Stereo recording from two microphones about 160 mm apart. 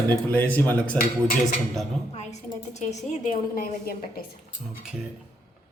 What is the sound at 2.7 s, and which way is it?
A woman's voice, 45° left (ahead or behind).